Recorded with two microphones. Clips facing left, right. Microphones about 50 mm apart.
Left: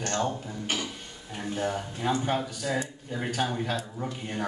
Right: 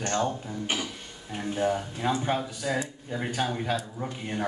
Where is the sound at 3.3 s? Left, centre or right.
Centre.